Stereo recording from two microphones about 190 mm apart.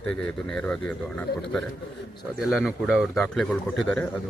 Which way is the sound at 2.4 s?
Centre (ahead or behind).